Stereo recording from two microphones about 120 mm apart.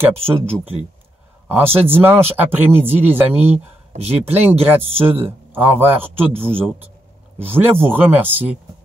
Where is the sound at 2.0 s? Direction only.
15° right (ahead or behind).